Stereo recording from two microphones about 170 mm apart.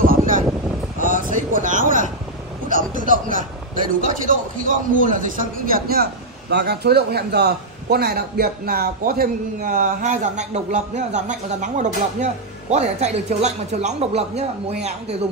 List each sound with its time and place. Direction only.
0.0 s a sound: 55° right (ahead or behind)
2.7 s a man's voice: 50° right (ahead or behind)
6.5 s a man's voice: 75° right (ahead or behind); by 15.1 s 40° right (ahead or behind)